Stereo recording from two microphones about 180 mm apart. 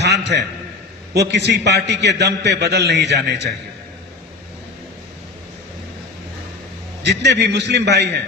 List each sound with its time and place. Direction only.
0.0 s a sound: 70° right (ahead or behind)
1.1 s a man's voice: 70° right (ahead or behind)
7.0 s a man's voice: 70° right (ahead or behind)